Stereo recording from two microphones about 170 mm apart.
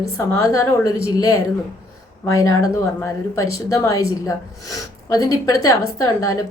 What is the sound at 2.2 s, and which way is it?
A woman's voice, 20° left (ahead or behind).